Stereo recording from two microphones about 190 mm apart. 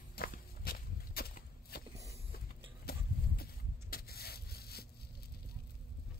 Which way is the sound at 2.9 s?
55° left (ahead or behind).